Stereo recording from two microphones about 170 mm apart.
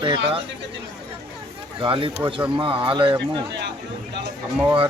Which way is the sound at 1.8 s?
30° right (ahead or behind).